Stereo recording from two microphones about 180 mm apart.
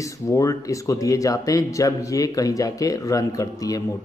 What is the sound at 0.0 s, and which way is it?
Speech, 15° left (ahead or behind).